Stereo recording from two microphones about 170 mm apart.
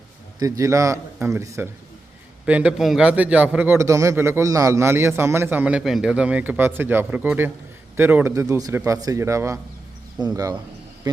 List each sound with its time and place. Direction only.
0.3 s a man's voice: 20° right (ahead or behind)